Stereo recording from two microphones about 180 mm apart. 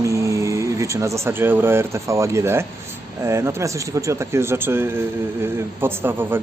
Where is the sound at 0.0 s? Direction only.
15° right (ahead or behind).